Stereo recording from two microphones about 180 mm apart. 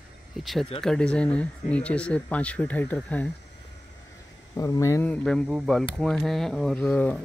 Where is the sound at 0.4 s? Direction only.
Centre (ahead or behind).